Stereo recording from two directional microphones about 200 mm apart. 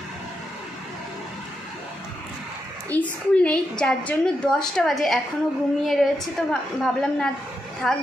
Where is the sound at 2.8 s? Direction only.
5° left (ahead or behind).